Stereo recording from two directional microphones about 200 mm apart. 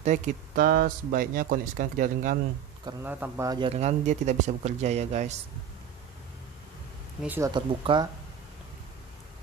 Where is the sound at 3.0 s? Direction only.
10° right (ahead or behind); by 5.4 s 35° right (ahead or behind).